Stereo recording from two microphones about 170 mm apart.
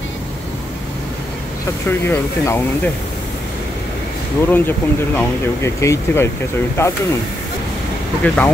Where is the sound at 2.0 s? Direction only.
15° left (ahead or behind).